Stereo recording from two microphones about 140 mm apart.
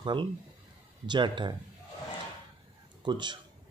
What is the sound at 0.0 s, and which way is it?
Speech, 35° right (ahead or behind).